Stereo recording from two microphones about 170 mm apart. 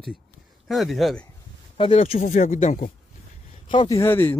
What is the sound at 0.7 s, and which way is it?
Speech, centre (ahead or behind).